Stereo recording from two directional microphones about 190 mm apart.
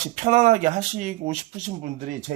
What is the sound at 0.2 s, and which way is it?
Speech, 40° right (ahead or behind).